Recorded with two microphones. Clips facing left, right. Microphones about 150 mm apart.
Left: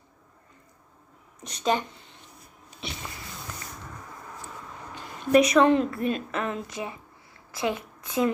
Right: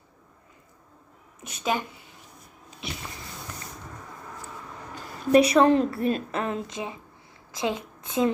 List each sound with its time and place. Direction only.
1.4 s a woman's voice: 5° right (ahead or behind)
2.8 s a sound: centre (ahead or behind)
5.3 s a woman's voice: 30° right (ahead or behind)